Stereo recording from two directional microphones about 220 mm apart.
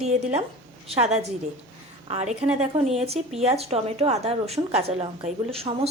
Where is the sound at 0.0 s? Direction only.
30° right (ahead or behind).